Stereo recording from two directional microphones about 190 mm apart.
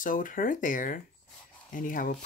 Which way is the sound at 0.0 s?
45° left (ahead or behind).